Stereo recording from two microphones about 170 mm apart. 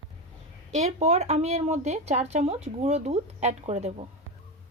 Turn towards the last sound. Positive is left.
turn(degrees=-40)  # may be behind; listen again after turning